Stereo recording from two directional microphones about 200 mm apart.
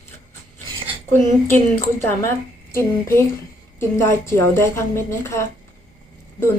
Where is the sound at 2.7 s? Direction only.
10° left (ahead or behind).